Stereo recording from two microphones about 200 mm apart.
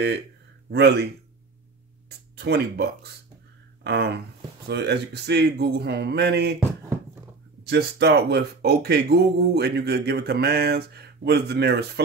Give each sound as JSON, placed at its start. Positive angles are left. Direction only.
{"t": 0.7, "sound": "speech", "side_deg": -55}
{"t": 7.6, "sound": "speech", "side_deg": -55}